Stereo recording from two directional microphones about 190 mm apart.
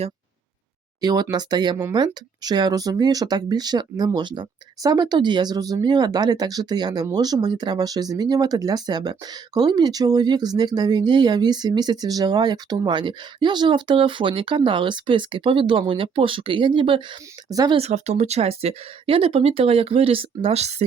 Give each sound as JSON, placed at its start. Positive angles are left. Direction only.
{"t": 1.0, "sound": "speech", "side_deg": -20}
{"t": 17.7, "sound": "speech", "side_deg": -35}